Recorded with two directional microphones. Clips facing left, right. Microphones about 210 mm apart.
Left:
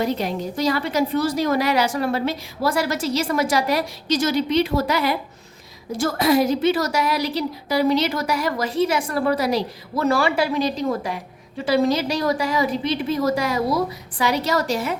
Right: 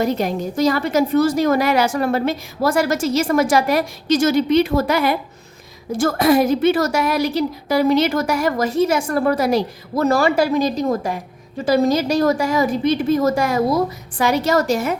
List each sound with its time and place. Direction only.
0.0 s a woman's voice: 45° right (ahead or behind)